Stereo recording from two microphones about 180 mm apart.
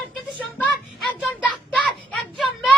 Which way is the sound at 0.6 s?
10° left (ahead or behind).